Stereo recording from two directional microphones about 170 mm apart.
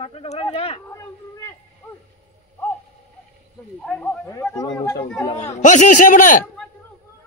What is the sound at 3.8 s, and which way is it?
Speech, 10° left (ahead or behind).